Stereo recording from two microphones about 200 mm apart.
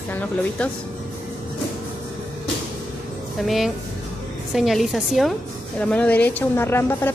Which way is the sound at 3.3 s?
Centre (ahead or behind).